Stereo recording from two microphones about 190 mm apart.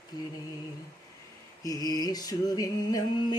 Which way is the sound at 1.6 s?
20° left (ahead or behind).